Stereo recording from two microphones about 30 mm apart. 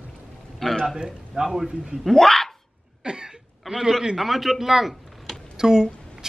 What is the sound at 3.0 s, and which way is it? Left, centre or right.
Cough, right.